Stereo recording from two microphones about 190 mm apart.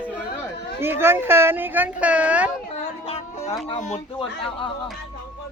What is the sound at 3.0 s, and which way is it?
Music, 30° left (ahead or behind).